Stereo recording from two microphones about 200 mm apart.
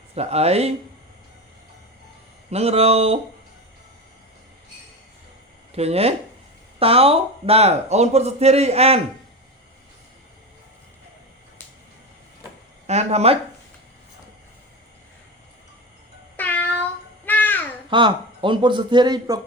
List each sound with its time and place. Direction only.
0.1 s speech: 30° right (ahead or behind)
2.5 s a man's voice: 30° right (ahead or behind)
5.7 s speech: 30° right (ahead or behind)
12.9 s speech: 35° right (ahead or behind)
16.4 s babbling: 10° left (ahead or behind)
17.9 s a man's voice: 25° right (ahead or behind)